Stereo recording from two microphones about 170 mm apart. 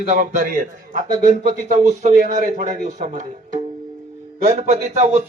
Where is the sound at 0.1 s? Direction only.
50° right (ahead or behind).